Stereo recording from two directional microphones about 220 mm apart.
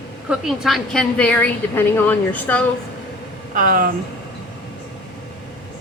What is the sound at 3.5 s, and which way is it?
Speech, 40° right (ahead or behind).